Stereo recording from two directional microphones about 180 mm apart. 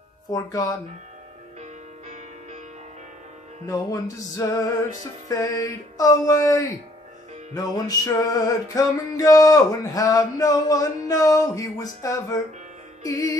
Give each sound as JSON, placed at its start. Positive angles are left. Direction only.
{"t": 0.3, "sound": "music", "side_deg": 20}
{"t": 1.6, "sound": "music", "side_deg": -40}
{"t": 4.4, "sound": "music", "side_deg": 15}